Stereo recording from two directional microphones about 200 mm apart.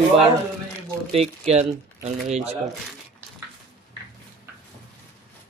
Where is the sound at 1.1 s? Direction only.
35° right (ahead or behind).